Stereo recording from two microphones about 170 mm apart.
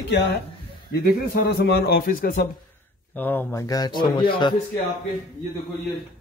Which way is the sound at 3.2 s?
10° left (ahead or behind).